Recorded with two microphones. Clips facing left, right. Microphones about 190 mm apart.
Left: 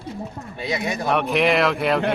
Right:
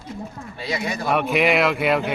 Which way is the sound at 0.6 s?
20° left (ahead or behind).